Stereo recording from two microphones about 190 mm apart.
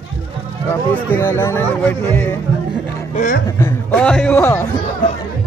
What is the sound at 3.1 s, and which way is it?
Music, 40° left (ahead or behind).